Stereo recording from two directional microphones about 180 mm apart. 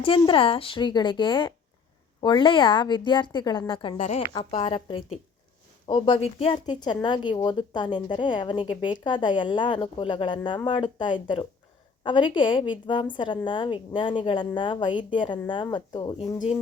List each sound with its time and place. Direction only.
0.2 s a woman's voice: 30° left (ahead or behind)